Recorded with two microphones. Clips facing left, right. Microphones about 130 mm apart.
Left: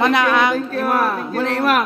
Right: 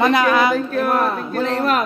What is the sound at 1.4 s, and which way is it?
Speech, 75° left (ahead or behind).